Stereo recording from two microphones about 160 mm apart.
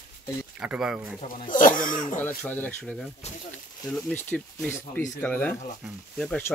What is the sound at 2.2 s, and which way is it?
Speech, 10° left (ahead or behind).